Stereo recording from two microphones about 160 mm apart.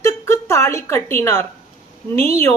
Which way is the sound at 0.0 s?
15° left (ahead or behind).